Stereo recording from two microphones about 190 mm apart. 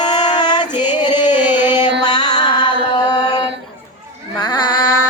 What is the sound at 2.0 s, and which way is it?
Mantra, 20° left (ahead or behind).